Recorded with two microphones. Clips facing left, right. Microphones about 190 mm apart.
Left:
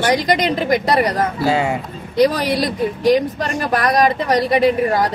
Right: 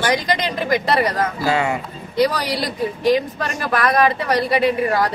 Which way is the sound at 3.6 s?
40° left (ahead or behind).